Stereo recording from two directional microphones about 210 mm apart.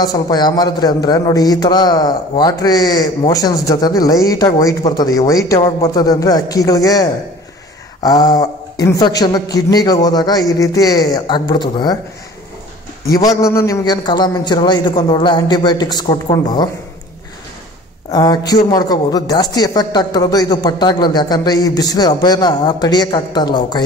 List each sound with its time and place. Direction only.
0.0 s a man's voice: 20° left (ahead or behind)
13.1 s speech: 15° left (ahead or behind)
18.1 s speech: 20° left (ahead or behind)